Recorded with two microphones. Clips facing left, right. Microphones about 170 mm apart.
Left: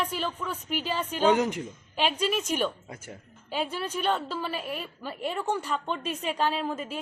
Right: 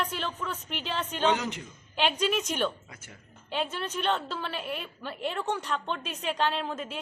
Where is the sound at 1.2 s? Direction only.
50° left (ahead or behind).